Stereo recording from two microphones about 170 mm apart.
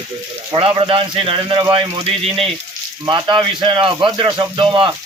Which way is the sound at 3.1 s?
30° right (ahead or behind).